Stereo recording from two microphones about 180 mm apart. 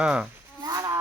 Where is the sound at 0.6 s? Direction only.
20° right (ahead or behind).